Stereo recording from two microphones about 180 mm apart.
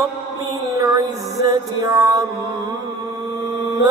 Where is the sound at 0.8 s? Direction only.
20° right (ahead or behind).